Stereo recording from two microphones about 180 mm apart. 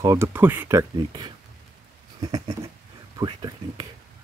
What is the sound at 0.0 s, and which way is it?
Speech, 15° right (ahead or behind).